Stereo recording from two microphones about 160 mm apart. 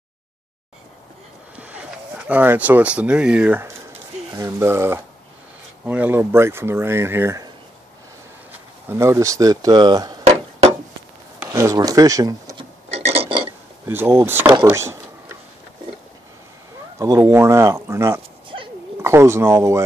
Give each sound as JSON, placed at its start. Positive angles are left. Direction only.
{"t": 1.6, "sound": "speech", "side_deg": -10}
{"t": 4.3, "sound": "speech", "side_deg": -20}
{"t": 8.8, "sound": "speech", "side_deg": -15}
{"t": 11.4, "sound": "speech", "side_deg": -20}
{"t": 12.9, "sound": "a sound", "side_deg": -40}
{"t": 13.8, "sound": "speech", "side_deg": -15}
{"t": 14.4, "sound": "speech", "side_deg": -30}
{"t": 14.7, "sound": "a sound", "side_deg": -15}
{"t": 17.0, "sound": "speech", "side_deg": -20}